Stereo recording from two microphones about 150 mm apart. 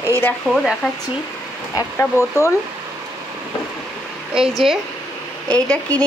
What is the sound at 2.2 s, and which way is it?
Speech, 15° right (ahead or behind).